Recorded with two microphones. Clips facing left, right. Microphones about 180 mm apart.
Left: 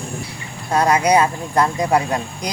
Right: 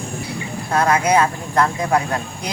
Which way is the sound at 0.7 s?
15° left (ahead or behind).